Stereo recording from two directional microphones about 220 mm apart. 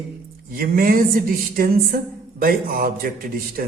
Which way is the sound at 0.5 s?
40° right (ahead or behind).